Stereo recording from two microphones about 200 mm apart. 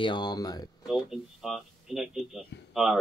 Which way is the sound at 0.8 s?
Centre (ahead or behind).